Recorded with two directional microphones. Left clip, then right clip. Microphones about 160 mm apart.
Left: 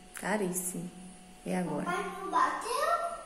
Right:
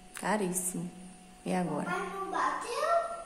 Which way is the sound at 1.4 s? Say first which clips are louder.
Right 1 dB; 15° right (ahead or behind).